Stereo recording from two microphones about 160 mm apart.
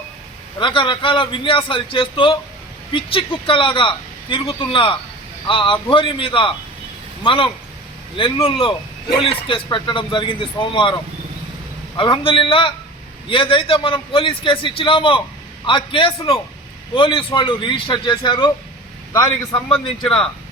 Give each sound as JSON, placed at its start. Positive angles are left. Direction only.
{"t": 0.6, "sound": "speech", "side_deg": 30}
{"t": 11.9, "sound": "speech", "side_deg": 30}
{"t": 19.1, "sound": "a man's voice", "side_deg": 20}